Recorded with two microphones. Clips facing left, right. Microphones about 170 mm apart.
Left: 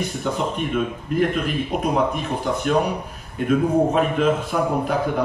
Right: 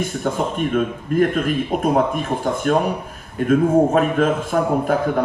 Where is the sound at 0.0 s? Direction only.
45° right (ahead or behind).